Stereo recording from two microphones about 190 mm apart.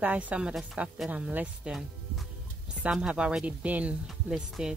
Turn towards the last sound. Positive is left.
turn(degrees=-5)  # may be behind; listen again after turning